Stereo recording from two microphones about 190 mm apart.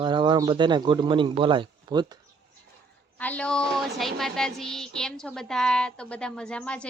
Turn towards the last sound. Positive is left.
turn(degrees=5)  # may be behind; listen again after turning